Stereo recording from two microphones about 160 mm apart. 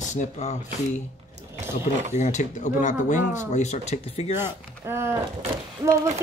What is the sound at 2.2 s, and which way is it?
Speech, 50° left (ahead or behind).